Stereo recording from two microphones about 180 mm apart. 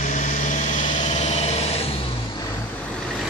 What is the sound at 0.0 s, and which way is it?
Light engine, 45° left (ahead or behind).